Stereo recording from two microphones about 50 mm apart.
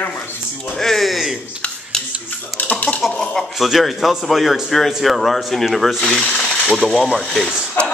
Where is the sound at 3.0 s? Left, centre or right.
Centre.